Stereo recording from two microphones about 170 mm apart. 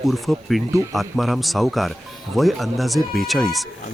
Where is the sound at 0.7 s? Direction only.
15° right (ahead or behind).